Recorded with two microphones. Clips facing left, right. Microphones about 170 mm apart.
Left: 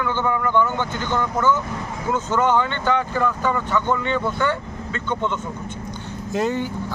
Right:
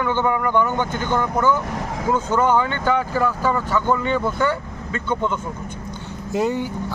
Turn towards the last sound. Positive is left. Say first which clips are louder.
# right 1 dB
turn(degrees=-15)  # may be behind; listen again after turning